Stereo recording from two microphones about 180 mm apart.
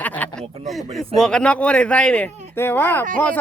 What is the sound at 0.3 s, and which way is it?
A man's voice, centre (ahead or behind).